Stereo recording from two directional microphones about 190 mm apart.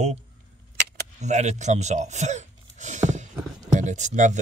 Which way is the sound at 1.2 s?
40° right (ahead or behind).